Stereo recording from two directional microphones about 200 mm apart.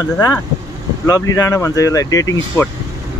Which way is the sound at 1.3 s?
15° left (ahead or behind).